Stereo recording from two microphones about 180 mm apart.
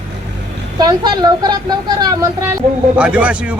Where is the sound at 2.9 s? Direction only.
5° right (ahead or behind).